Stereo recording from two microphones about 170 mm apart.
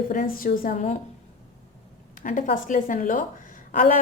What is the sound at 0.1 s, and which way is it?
Speech, 55° left (ahead or behind).